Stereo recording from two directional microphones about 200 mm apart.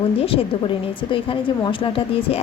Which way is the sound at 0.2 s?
30° left (ahead or behind).